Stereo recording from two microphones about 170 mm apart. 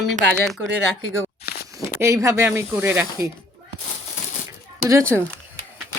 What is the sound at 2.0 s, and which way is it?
Speech, 15° right (ahead or behind).